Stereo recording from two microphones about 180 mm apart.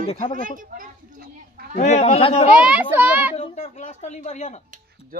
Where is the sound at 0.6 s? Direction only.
55° right (ahead or behind).